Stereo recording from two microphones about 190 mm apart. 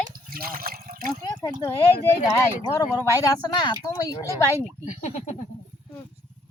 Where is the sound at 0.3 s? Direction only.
50° right (ahead or behind).